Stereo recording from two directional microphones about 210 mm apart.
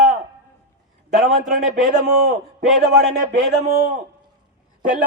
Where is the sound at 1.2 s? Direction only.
35° right (ahead or behind).